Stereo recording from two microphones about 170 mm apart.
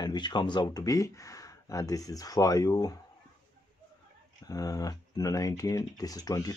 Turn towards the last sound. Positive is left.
turn(degrees=20)  # may be behind; listen again after turning